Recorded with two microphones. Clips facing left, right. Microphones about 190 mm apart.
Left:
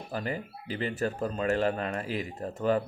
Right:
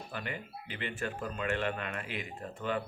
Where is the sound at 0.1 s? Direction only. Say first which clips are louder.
Left 8 dB; 35° left (ahead or behind).